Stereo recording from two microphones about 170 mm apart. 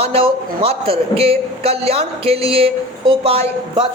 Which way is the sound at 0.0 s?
35° right (ahead or behind).